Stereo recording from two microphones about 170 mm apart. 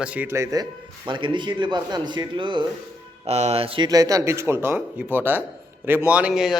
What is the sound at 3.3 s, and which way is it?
Speech, 40° right (ahead or behind).